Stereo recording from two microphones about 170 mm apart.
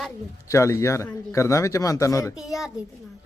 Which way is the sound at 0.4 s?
15° left (ahead or behind).